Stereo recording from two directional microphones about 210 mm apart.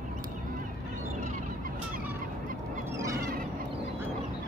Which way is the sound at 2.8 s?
15° right (ahead or behind).